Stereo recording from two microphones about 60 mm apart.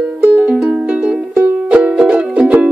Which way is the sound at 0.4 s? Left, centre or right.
Centre.